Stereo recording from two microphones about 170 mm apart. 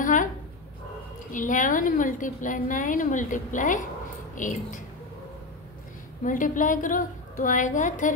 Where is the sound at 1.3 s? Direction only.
50° left (ahead or behind).